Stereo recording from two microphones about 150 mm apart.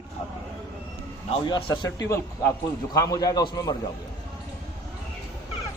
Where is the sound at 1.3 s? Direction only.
35° left (ahead or behind).